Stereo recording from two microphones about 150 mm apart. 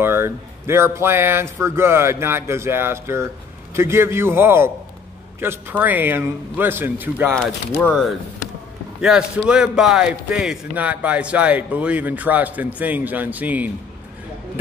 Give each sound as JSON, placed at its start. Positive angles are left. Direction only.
{"t": 0.0, "sound": "speech", "side_deg": -15}
{"t": 7.8, "sound": "speech", "side_deg": 10}
{"t": 9.5, "sound": "speech", "side_deg": -5}